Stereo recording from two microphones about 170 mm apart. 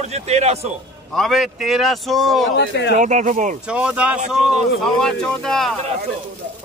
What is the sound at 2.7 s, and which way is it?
Speech, 90° left.